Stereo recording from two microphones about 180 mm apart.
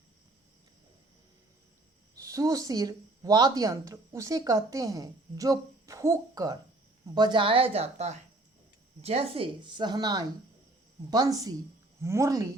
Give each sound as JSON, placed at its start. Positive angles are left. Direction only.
{"t": 2.2, "sound": "a woman's voice", "side_deg": -20}